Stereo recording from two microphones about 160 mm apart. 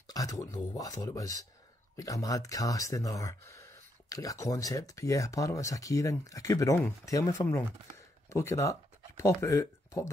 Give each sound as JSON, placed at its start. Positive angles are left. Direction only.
{"t": 0.0, "sound": "speech", "side_deg": 20}